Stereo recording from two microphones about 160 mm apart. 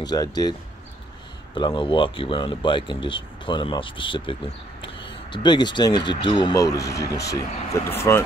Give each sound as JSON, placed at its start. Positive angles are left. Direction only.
{"t": 0.0, "sound": "speech", "side_deg": 25}